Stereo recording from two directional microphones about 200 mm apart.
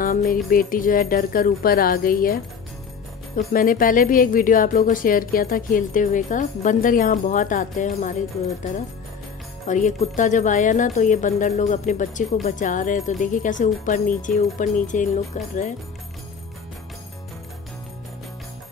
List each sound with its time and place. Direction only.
0.0 s speech: 45° left (ahead or behind)
9.7 s speech: 40° left (ahead or behind)